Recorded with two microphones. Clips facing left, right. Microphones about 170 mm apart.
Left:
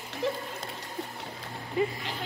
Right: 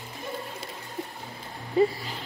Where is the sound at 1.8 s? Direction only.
35° right (ahead or behind).